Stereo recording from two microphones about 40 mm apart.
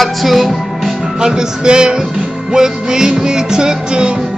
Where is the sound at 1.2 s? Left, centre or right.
Centre.